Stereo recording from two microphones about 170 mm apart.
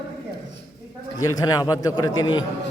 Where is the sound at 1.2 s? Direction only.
20° left (ahead or behind).